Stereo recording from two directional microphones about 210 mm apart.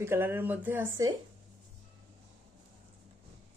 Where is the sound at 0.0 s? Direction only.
10° right (ahead or behind).